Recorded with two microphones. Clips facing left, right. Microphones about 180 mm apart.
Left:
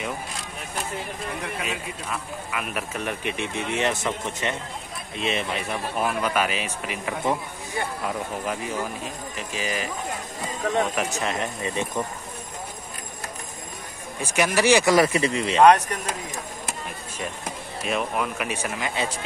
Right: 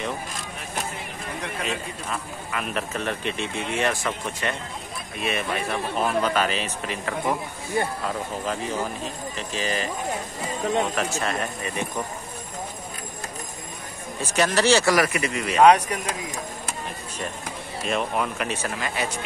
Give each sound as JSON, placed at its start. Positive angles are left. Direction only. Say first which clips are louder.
{"t": 1.6, "sound": "speech", "louder": "right 1 dB", "side_deg": 5}
{"t": 5.9, "sound": "speech", "louder": "right 1 dB", "side_deg": 10}
{"t": 11.0, "sound": "speech", "louder": "even", "side_deg": 20}
{"t": 14.2, "sound": "speech", "louder": "even", "side_deg": 10}
{"t": 15.6, "sound": "speech", "louder": "even", "side_deg": -10}
{"t": 17.8, "sound": "speech", "louder": "right 1 dB", "side_deg": 5}